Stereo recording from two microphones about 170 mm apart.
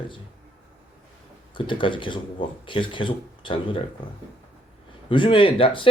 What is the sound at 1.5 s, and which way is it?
Speech, 30° left (ahead or behind).